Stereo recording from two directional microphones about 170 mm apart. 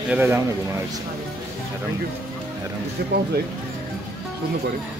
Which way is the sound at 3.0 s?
70° right (ahead or behind).